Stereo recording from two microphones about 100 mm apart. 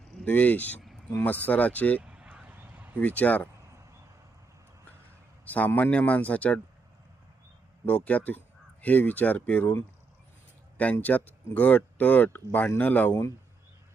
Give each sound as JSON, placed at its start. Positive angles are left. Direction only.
{"t": 0.3, "sound": "speech", "side_deg": 15}
{"t": 2.0, "sound": "a sound", "side_deg": -10}
{"t": 3.0, "sound": "speech", "side_deg": 15}
{"t": 5.5, "sound": "speech", "side_deg": 15}
{"t": 7.9, "sound": "speech", "side_deg": 15}